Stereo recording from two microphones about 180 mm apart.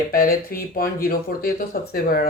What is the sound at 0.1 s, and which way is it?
Speech, 55° left (ahead or behind).